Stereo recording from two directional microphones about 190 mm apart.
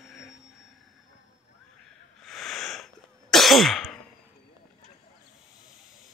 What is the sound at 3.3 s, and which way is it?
Throat clearing, centre (ahead or behind).